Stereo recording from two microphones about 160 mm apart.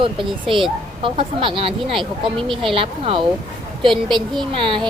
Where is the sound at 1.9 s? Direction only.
Centre (ahead or behind).